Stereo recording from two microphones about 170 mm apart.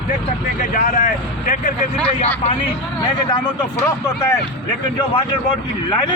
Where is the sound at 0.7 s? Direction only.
55° left (ahead or behind).